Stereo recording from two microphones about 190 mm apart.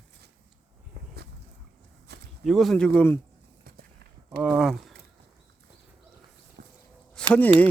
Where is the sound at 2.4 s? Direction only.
Centre (ahead or behind).